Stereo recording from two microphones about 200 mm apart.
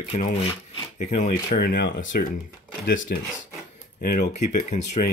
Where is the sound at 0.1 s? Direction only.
35° left (ahead or behind).